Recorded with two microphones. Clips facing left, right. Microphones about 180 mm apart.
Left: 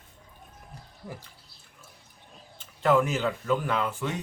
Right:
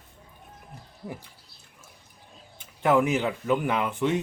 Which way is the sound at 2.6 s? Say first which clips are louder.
Right 1 dB; 15° right (ahead or behind).